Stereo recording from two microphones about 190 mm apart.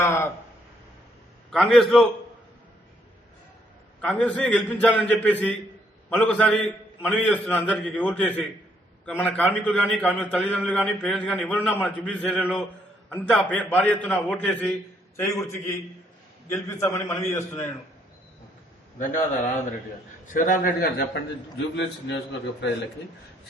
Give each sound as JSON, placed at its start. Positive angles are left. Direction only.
{"t": 0.0, "sound": "a sound", "side_deg": 15}
{"t": 1.5, "sound": "a man's voice", "side_deg": 0}
{"t": 4.0, "sound": "a man's voice", "side_deg": 5}
{"t": 18.9, "sound": "a man's voice", "side_deg": 40}
{"t": 21.8, "sound": "a man's voice", "side_deg": 70}